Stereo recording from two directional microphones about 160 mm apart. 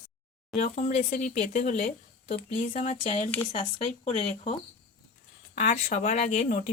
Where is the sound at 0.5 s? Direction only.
50° left (ahead or behind).